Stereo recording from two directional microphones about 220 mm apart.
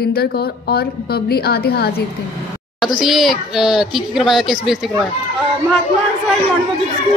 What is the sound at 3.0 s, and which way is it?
Speech, centre (ahead or behind).